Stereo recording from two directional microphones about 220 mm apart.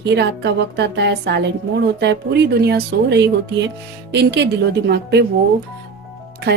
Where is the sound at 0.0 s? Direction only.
50° right (ahead or behind).